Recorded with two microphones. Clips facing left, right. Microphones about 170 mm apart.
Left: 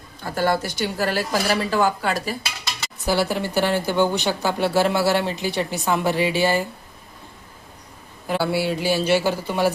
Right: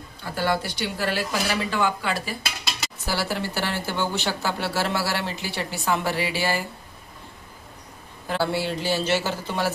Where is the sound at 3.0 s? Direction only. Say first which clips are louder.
Left 6 dB; 20° left (ahead or behind).